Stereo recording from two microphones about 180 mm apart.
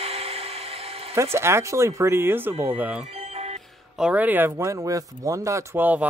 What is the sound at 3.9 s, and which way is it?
Speech, 5° right (ahead or behind).